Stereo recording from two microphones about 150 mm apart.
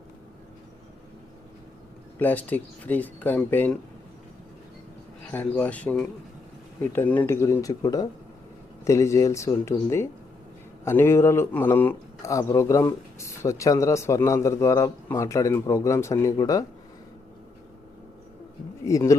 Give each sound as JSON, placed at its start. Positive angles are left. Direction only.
{"t": 2.1, "sound": "speech", "side_deg": 10}
{"t": 5.3, "sound": "speech", "side_deg": 10}
{"t": 18.9, "sound": "speech", "side_deg": 20}